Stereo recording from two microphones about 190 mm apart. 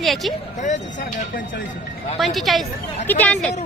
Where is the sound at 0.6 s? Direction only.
40° left (ahead or behind).